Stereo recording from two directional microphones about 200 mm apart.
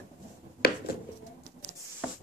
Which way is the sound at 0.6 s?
55° left (ahead or behind).